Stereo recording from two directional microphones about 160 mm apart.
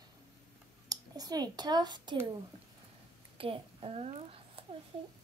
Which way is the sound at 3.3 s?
35° right (ahead or behind).